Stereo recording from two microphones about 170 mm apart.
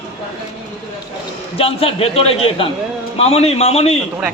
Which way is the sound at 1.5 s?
35° left (ahead or behind).